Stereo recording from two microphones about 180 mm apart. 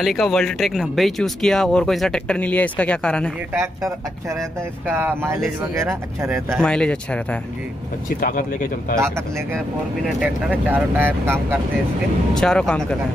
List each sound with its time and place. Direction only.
0.0 s speech: centre (ahead or behind)
3.5 s speech: 15° right (ahead or behind)
6.6 s speech: 5° left (ahead or behind)
8.2 s speech: 50° left (ahead or behind)
8.9 s speech: 15° right (ahead or behind)
12.4 s speech: 5° left (ahead or behind)